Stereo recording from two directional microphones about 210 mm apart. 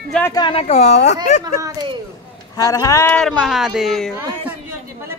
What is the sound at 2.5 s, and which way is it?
Speech, 15° left (ahead or behind).